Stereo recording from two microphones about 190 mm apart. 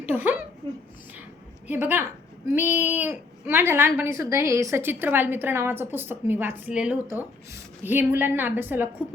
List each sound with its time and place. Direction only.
0.0 s speech: 10° right (ahead or behind)
1.6 s a woman's voice: 10° right (ahead or behind)